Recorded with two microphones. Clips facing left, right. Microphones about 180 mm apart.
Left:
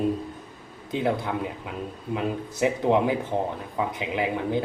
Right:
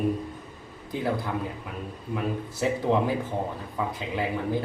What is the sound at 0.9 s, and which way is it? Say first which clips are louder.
Speech: left 3 dB; 20° left (ahead or behind).